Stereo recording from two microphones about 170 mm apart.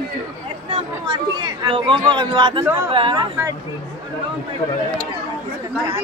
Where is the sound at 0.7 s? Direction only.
25° right (ahead or behind).